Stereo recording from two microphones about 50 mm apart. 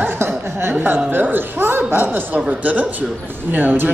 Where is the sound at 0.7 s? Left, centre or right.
Right.